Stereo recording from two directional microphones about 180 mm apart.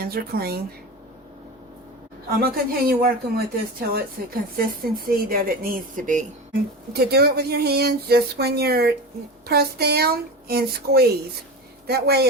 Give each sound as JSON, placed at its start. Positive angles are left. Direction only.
{"t": 0.0, "sound": "speech", "side_deg": -55}
{"t": 2.4, "sound": "speech", "side_deg": -55}
{"t": 5.0, "sound": "speech", "side_deg": -55}